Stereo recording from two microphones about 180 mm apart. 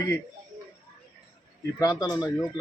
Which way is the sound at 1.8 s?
20° left (ahead or behind).